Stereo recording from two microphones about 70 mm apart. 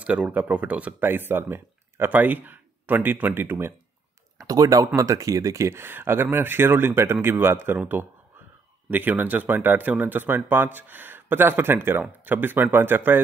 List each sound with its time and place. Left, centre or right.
0.0 s speech: centre
1.0 s speech: right
4.4 s speech: right
5.7 s speech: right
8.9 s speech: right